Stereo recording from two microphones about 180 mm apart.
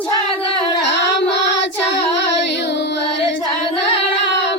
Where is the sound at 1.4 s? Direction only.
80° left.